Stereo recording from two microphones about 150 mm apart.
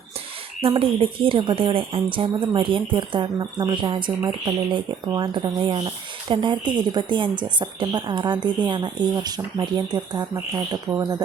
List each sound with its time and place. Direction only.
0.6 s speech: 40° right (ahead or behind)